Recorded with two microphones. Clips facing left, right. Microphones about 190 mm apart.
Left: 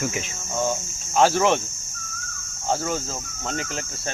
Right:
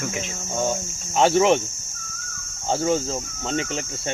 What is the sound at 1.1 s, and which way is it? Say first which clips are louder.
Speech: right 1 dB; 25° right (ahead or behind).